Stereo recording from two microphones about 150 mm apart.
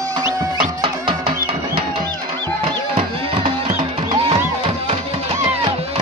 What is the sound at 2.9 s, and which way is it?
Music, 40° right (ahead or behind).